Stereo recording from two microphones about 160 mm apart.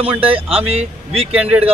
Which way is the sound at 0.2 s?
35° right (ahead or behind).